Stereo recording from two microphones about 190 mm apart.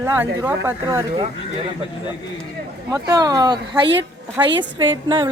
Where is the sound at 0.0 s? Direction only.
10° right (ahead or behind).